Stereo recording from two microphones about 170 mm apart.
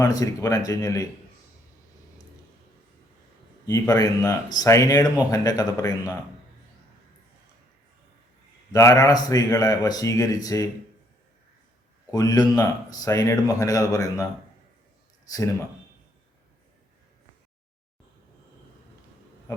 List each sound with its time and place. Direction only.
0.0 s speech: 20° left (ahead or behind)
3.7 s speech: 20° left (ahead or behind)
8.7 s speech: 20° left (ahead or behind)
12.1 s speech: 20° left (ahead or behind)
15.3 s speech: 20° left (ahead or behind)
19.5 s a sound: 15° left (ahead or behind)